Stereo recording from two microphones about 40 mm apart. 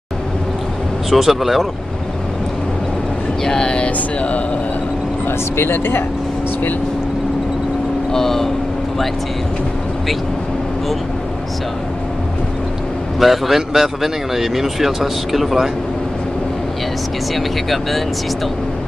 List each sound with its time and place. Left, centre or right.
1.1 s speech: centre
3.4 s a sound: centre
5.6 s speech: left
8.1 s speech: centre
13.2 s speech: centre
17.4 s speech: centre